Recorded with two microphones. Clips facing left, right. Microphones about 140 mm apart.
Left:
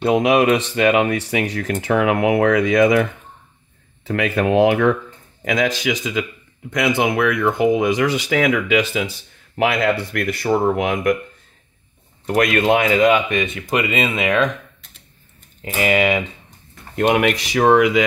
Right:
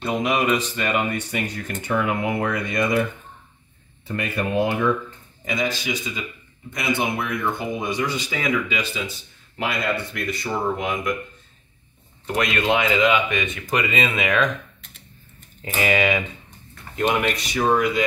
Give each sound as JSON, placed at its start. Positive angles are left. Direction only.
{"t": 0.0, "sound": "speech", "side_deg": 65}
{"t": 12.4, "sound": "speech", "side_deg": 50}
{"t": 13.7, "sound": "speech", "side_deg": 25}
{"t": 15.6, "sound": "speech", "side_deg": 25}
{"t": 16.9, "sound": "speech", "side_deg": 60}